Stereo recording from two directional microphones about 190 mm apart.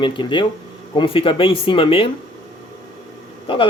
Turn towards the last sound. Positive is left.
turn(degrees=25)  # may be behind; listen again after turning